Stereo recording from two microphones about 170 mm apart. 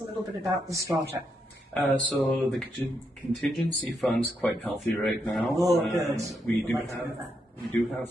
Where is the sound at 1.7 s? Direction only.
10° left (ahead or behind).